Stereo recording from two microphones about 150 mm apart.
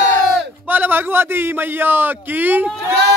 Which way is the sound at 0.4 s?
10° right (ahead or behind).